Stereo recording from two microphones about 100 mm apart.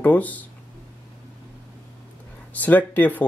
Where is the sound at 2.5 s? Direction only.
15° left (ahead or behind).